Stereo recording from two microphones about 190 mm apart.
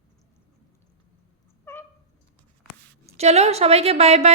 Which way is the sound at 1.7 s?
10° left (ahead or behind).